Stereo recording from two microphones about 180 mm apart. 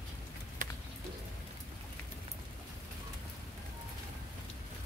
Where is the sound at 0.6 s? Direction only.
50° right (ahead or behind).